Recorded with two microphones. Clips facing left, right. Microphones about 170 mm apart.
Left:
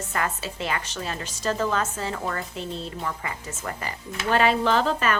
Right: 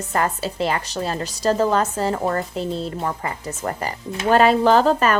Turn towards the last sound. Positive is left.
turn(degrees=-40)  # may be behind; listen again after turning